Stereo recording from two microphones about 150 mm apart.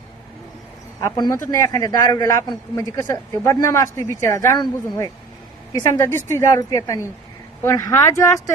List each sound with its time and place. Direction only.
1.1 s speech: 30° left (ahead or behind)